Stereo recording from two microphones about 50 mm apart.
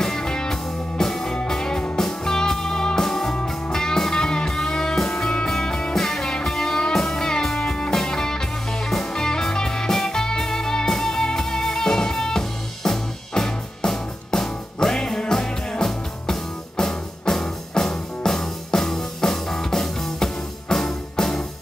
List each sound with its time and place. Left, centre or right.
0.0 s music: centre